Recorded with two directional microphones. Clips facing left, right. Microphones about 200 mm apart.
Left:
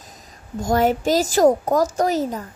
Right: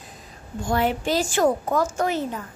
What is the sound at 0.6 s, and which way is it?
A woman's voice, 40° left (ahead or behind).